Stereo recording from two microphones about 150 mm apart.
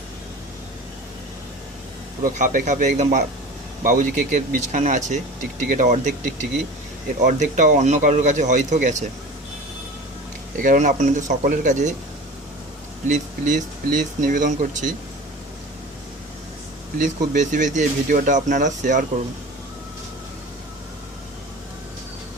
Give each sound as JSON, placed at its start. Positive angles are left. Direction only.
{"t": 2.2, "sound": "speech", "side_deg": -65}
{"t": 7.2, "sound": "speech", "side_deg": -60}
{"t": 10.6, "sound": "speech", "side_deg": -60}
{"t": 13.1, "sound": "speech", "side_deg": -55}
{"t": 17.0, "sound": "speech", "side_deg": -55}